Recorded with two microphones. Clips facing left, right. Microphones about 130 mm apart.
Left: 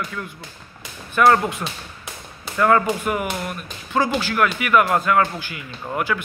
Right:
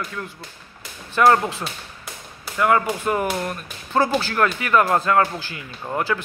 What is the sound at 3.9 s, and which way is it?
Speech, 35° right (ahead or behind).